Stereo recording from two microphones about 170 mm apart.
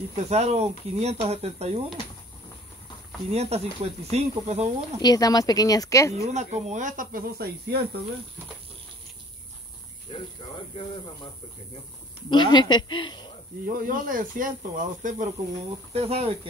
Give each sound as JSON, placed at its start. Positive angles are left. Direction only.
{"t": 0.2, "sound": "speech", "side_deg": -40}
{"t": 3.3, "sound": "speech", "side_deg": -40}
{"t": 5.0, "sound": "speech", "side_deg": 20}
{"t": 6.2, "sound": "speech", "side_deg": -45}
{"t": 10.1, "sound": "speech", "side_deg": 30}
{"t": 12.3, "sound": "speech", "side_deg": 25}
{"t": 13.7, "sound": "speech", "side_deg": -55}
{"t": 15.9, "sound": "speech", "side_deg": -35}